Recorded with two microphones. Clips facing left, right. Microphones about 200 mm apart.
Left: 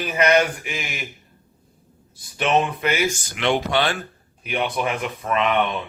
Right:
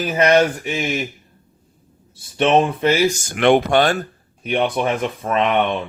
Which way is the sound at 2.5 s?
30° right (ahead or behind).